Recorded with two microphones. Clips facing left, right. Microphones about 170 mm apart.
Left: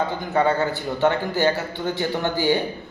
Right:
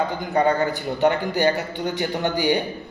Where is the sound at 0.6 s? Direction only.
15° right (ahead or behind).